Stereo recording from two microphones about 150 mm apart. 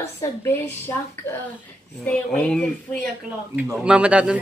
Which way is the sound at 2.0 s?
5° left (ahead or behind).